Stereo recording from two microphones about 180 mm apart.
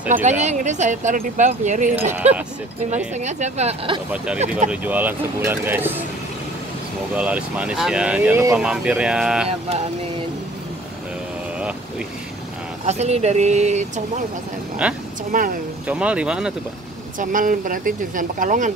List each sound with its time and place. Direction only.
0.1 s speech: 40° right (ahead or behind)
2.1 s speech: 10° right (ahead or behind)
3.2 s speech: 40° right (ahead or behind)
4.6 s speech: 10° right (ahead or behind)
7.2 s speech: 5° right (ahead or behind)
12.8 s speech: 40° right (ahead or behind)
14.8 s speech: 5° right (ahead or behind)
15.3 s speech: 50° right (ahead or behind)
15.9 s speech: 5° right (ahead or behind)
17.2 s speech: 50° right (ahead or behind)